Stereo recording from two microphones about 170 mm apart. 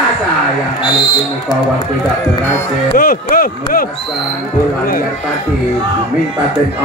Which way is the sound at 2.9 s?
55° left (ahead or behind).